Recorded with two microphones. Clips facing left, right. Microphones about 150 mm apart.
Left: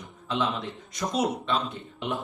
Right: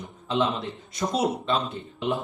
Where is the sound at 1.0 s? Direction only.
35° right (ahead or behind).